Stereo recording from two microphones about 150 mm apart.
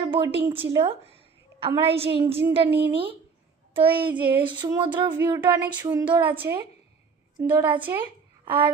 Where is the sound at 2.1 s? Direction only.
35° right (ahead or behind).